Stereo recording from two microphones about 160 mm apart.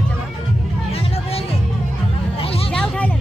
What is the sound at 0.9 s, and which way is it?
Music, 40° left (ahead or behind).